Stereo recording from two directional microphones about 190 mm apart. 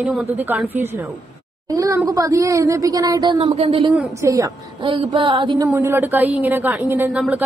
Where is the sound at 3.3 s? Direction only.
35° right (ahead or behind).